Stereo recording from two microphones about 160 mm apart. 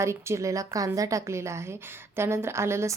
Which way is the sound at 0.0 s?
15° right (ahead or behind).